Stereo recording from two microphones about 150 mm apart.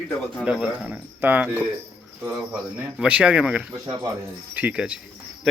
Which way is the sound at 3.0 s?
10° right (ahead or behind).